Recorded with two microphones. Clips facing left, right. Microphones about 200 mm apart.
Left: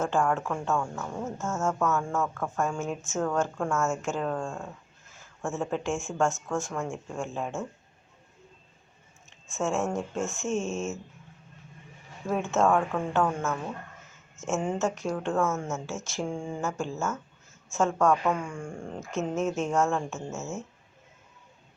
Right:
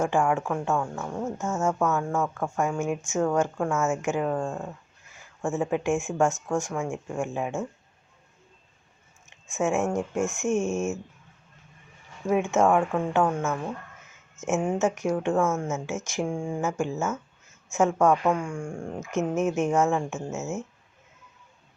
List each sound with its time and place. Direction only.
0.0 s speech: 15° right (ahead or behind)
1.8 s speech: 5° right (ahead or behind)
3.7 s speech: centre (ahead or behind)
3.9 s speech: 15° right (ahead or behind)
9.5 s speech: 15° right (ahead or behind)
12.2 s speech: 15° right (ahead or behind)
14.4 s speech: 10° right (ahead or behind)
15.4 s speech: centre (ahead or behind)
16.0 s speech: 10° right (ahead or behind)